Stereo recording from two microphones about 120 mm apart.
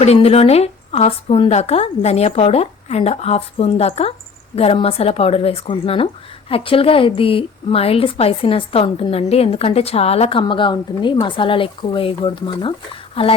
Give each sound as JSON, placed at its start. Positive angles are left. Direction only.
{"t": 0.0, "sound": "a woman's voice", "side_deg": 60}
{"t": 10.4, "sound": "a woman's voice", "side_deg": 40}